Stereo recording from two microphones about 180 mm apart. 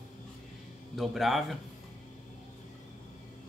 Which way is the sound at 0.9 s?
Centre (ahead or behind).